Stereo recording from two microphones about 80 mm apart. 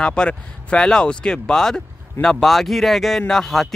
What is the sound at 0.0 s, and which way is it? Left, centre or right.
Speech, centre.